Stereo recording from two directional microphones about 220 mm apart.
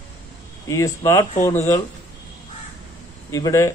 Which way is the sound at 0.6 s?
15° left (ahead or behind).